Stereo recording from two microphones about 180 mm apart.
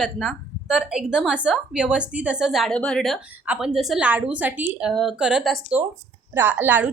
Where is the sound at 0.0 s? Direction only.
Centre (ahead or behind).